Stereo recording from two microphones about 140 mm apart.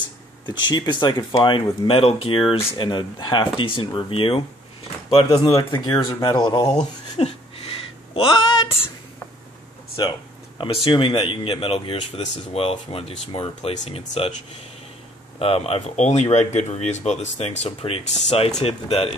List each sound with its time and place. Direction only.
0.5 s speech: 30° left (ahead or behind)
6.8 s a sound: 45° left (ahead or behind)
10.0 s speech: 30° left (ahead or behind)
10.6 s speech: 40° left (ahead or behind)
15.3 s speech: 45° left (ahead or behind)